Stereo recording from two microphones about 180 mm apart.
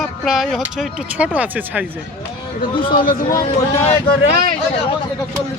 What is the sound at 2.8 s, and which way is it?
A man's voice, 25° left (ahead or behind).